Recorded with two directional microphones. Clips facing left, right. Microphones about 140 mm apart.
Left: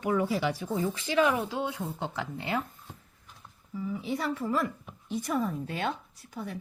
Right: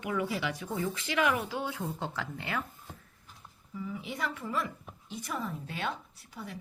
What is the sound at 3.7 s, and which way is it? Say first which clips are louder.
A woman's voice: left 5 dB; 30° left (ahead or behind).